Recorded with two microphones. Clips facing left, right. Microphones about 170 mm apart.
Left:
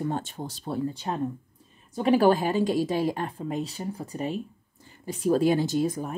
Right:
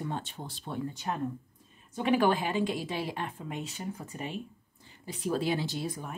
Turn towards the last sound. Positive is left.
turn(degrees=40)  # may be behind; listen again after turning